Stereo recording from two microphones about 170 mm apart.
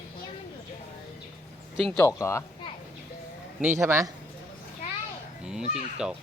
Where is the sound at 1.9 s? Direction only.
15° left (ahead or behind).